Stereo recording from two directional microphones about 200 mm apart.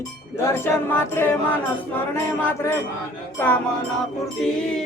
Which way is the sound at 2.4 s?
10° left (ahead or behind).